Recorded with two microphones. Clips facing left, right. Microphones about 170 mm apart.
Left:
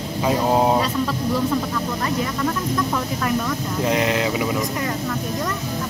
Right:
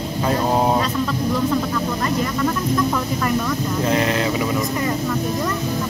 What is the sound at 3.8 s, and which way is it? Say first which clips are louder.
Speech: even; 15° left (ahead or behind).